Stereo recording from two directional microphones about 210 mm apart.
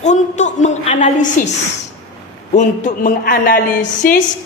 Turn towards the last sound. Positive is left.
turn(degrees=40)  # may be behind; listen again after turning